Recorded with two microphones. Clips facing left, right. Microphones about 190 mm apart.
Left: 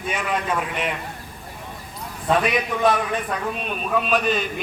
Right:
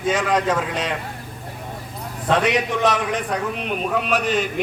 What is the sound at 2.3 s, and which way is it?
A man's voice, 85° right.